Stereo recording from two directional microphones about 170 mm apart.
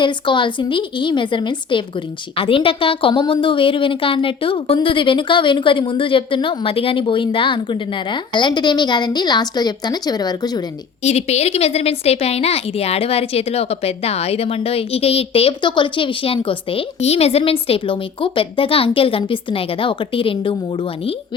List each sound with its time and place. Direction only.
0.0 s a woman's voice: 30° left (ahead or behind)
11.0 s a woman's voice: 40° left (ahead or behind)